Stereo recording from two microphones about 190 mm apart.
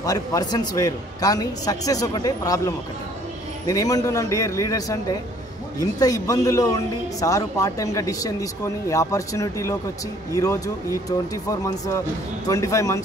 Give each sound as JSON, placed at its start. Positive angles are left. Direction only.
{"t": 0.0, "sound": "a man's voice", "side_deg": 20}
{"t": 12.4, "sound": "speech", "side_deg": 15}